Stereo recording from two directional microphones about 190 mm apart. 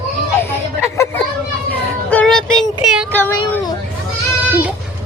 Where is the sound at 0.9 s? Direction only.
15° left (ahead or behind).